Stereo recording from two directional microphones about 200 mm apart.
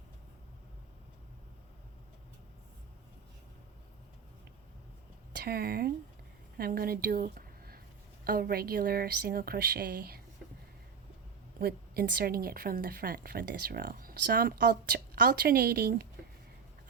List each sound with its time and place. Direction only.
5.3 s a woman's voice: 50° right (ahead or behind)
11.6 s a woman's voice: 50° right (ahead or behind)